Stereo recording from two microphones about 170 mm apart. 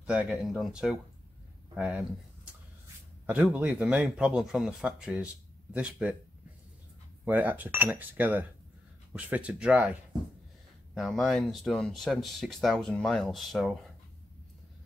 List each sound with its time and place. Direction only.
0.0 s speech: 5° right (ahead or behind)
3.3 s speech: 10° right (ahead or behind)
7.2 s speech: 10° right (ahead or behind)
11.0 s speech: centre (ahead or behind)